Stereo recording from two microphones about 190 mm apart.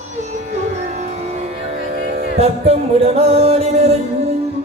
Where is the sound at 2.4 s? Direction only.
30° right (ahead or behind).